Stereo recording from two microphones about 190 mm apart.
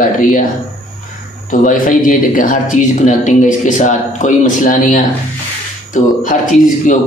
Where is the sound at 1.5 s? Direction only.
45° left (ahead or behind).